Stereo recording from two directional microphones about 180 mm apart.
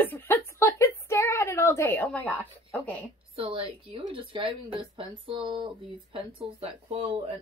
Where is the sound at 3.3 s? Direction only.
30° right (ahead or behind).